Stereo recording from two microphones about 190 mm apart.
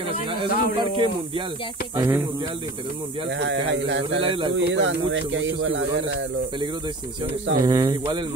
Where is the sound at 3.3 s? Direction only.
70° right (ahead or behind).